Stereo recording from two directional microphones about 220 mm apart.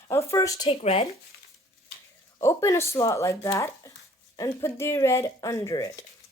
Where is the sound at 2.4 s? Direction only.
10° left (ahead or behind).